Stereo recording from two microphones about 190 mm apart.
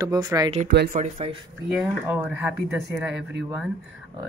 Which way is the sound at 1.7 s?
5° right (ahead or behind).